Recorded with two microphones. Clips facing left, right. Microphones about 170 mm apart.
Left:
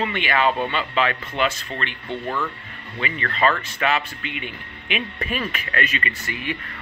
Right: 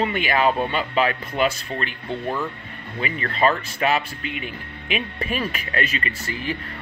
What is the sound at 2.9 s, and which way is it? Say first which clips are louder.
Speech: right 1 dB; 35° right (ahead or behind).